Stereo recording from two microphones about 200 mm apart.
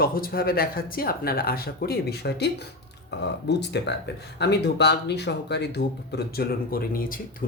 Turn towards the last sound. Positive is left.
turn(degrees=45)  # may be behind; listen again after turning